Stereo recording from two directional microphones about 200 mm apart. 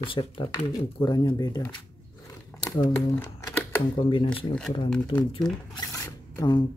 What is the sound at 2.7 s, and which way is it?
Speech, 10° left (ahead or behind).